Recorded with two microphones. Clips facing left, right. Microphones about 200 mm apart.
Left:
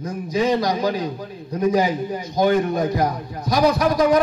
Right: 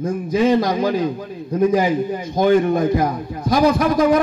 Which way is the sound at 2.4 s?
50° right (ahead or behind).